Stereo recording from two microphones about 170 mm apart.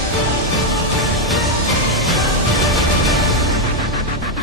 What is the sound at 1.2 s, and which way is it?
Music, centre (ahead or behind).